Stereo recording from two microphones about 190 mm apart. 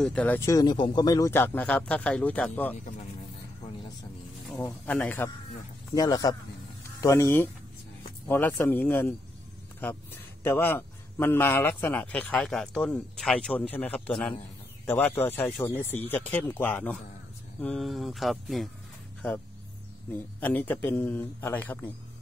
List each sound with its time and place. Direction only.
0.0 s a man's voice: 5° left (ahead or behind)
4.8 s a man's voice: 5° left (ahead or behind)
20.1 s a man's voice: 10° left (ahead or behind)